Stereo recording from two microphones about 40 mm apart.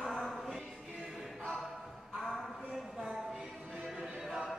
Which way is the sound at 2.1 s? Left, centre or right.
Centre.